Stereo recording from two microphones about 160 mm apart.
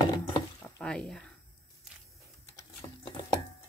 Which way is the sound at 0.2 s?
30° left (ahead or behind).